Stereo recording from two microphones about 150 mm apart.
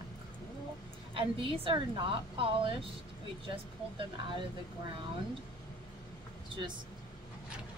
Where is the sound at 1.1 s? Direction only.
35° right (ahead or behind).